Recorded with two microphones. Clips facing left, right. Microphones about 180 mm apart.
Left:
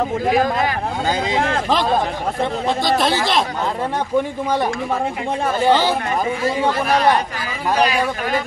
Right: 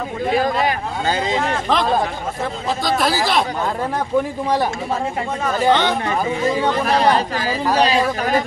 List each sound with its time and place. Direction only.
2.8 s speech: centre (ahead or behind)
5.7 s speech: 5° left (ahead or behind)
6.9 s speech: 30° right (ahead or behind)